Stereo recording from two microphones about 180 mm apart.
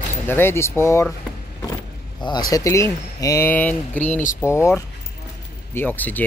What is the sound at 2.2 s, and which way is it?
Speech, 20° left (ahead or behind).